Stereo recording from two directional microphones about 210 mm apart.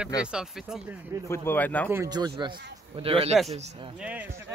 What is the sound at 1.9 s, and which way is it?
A man's voice, 15° right (ahead or behind).